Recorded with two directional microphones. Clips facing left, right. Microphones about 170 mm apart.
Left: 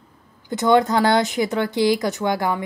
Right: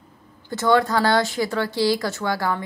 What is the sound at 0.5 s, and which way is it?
A woman's voice, 20° left (ahead or behind).